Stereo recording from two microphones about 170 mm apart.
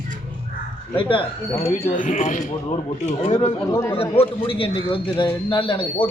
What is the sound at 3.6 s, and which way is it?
Speech, 15° left (ahead or behind).